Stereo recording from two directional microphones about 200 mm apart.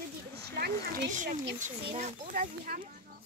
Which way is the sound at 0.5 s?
50° right (ahead or behind).